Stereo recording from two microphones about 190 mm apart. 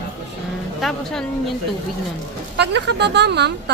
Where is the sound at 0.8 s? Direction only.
Centre (ahead or behind).